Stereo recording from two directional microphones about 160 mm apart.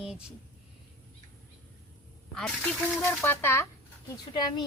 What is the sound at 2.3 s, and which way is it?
A woman's voice, 5° left (ahead or behind).